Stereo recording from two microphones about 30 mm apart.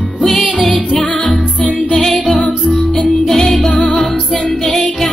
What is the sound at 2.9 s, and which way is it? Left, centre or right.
Music, centre.